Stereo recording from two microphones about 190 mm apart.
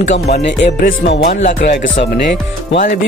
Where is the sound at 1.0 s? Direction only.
60° left (ahead or behind).